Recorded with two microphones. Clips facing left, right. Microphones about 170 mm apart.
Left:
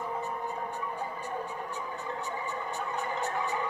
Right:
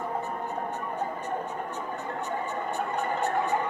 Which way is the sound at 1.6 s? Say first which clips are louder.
Right 4 dB; 60° right (ahead or behind).